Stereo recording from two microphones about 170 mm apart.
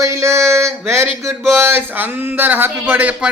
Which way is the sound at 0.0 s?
15° right (ahead or behind).